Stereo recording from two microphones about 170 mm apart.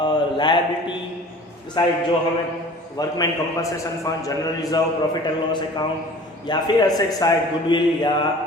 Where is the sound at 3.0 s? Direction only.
20° left (ahead or behind).